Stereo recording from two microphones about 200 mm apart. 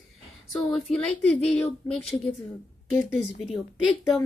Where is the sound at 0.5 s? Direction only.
Centre (ahead or behind).